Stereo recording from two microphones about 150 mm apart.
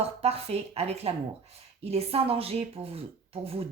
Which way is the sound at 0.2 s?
45° right (ahead or behind).